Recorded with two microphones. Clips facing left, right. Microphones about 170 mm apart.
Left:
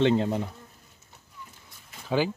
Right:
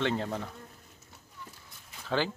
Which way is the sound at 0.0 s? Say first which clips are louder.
Left 8 dB; 20° left (ahead or behind).